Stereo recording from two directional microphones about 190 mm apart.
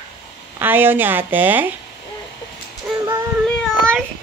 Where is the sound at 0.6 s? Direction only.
10° right (ahead or behind).